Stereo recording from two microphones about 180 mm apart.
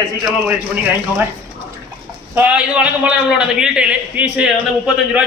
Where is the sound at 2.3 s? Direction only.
5° right (ahead or behind).